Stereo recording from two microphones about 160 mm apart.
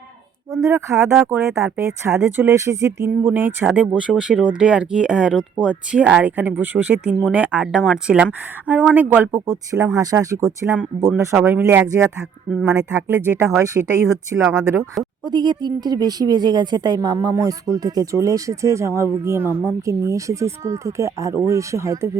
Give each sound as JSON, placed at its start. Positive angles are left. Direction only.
{"t": 0.6, "sound": "speech", "side_deg": -15}
{"t": 9.8, "sound": "speech", "side_deg": -20}
{"t": 15.2, "sound": "speech", "side_deg": -25}